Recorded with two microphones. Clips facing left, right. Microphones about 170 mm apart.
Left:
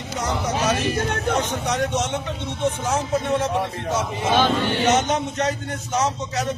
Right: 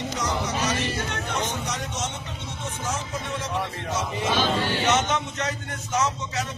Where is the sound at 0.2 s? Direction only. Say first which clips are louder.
Left 5 dB; 50° left (ahead or behind).